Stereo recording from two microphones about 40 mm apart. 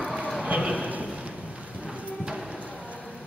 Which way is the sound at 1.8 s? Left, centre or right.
Right.